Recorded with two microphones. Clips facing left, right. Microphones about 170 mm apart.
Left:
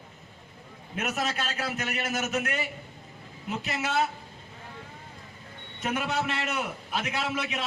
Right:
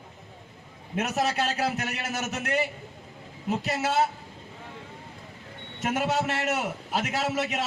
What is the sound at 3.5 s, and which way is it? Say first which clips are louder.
Speech: right 4 dB; 40° right (ahead or behind).